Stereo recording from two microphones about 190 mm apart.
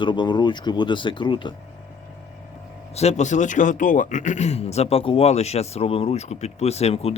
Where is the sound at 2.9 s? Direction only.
35° left (ahead or behind).